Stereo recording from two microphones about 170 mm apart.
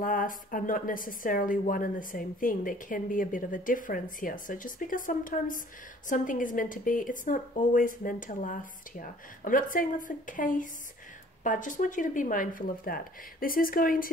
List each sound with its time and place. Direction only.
0.0 s a woman's voice: 55° left (ahead or behind)